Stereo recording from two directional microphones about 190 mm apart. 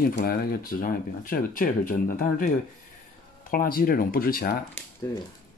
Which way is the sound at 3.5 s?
50° left (ahead or behind).